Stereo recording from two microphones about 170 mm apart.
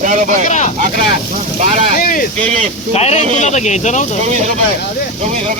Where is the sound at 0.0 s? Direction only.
50° right (ahead or behind).